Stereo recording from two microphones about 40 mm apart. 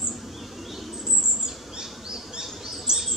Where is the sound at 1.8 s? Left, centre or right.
Centre.